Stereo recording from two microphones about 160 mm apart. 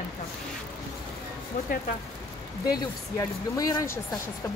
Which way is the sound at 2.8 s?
20° left (ahead or behind).